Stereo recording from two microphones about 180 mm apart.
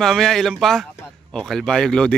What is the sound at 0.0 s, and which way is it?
Speech, centre (ahead or behind).